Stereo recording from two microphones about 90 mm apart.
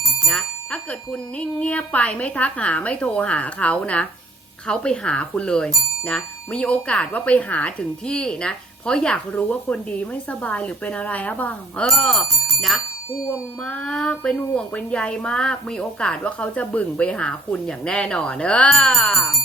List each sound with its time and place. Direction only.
0.3 s speech: 10° left (ahead or behind)
11.9 s speech: 5° left (ahead or behind)
13.7 s speech: 10° left (ahead or behind)